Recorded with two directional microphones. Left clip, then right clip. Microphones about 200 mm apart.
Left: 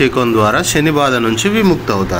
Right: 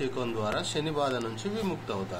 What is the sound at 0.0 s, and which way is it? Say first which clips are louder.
A man's voice: left 19 dB; 35° left (ahead or behind).